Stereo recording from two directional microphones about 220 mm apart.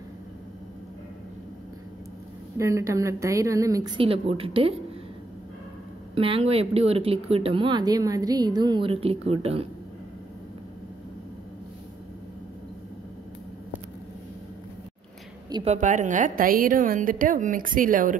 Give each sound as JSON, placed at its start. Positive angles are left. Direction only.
{"t": 2.5, "sound": "a woman's voice", "side_deg": -15}
{"t": 6.1, "sound": "a woman's voice", "side_deg": -25}
{"t": 15.5, "sound": "a woman's voice", "side_deg": -30}